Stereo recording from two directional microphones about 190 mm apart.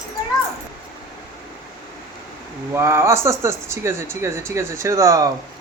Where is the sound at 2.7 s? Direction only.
15° right (ahead or behind).